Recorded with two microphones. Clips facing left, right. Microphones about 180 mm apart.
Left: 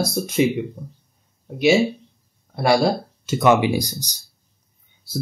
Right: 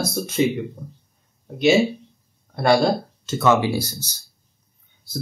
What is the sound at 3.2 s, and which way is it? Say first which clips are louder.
Speech: left 2 dB; 15° left (ahead or behind).